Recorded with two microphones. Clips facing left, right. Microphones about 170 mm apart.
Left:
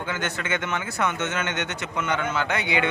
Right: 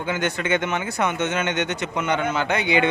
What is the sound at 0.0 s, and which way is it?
Speech, 15° right (ahead or behind).